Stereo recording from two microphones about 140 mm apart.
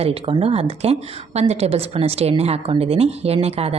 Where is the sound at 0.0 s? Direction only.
40° right (ahead or behind).